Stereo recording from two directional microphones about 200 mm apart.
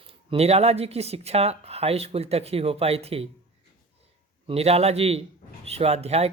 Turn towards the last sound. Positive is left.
turn(degrees=-30)  # may be behind; listen again after turning